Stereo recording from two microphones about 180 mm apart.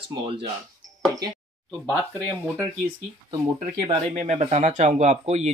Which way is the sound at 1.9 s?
10° left (ahead or behind).